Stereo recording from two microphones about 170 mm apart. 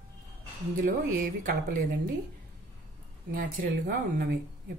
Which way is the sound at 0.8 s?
50° right (ahead or behind).